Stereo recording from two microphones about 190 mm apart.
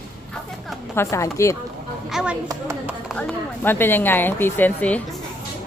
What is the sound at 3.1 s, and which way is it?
Speech, 10° left (ahead or behind).